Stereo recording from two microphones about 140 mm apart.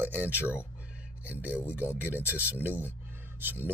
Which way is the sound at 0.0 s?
10° right (ahead or behind).